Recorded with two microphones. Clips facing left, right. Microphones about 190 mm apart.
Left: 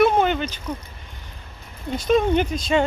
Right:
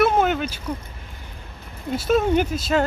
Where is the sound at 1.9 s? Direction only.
5° right (ahead or behind).